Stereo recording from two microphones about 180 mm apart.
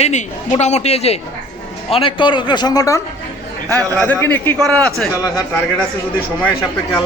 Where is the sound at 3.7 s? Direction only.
10° left (ahead or behind).